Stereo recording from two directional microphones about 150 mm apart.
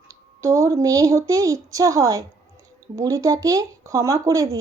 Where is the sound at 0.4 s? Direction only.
20° right (ahead or behind).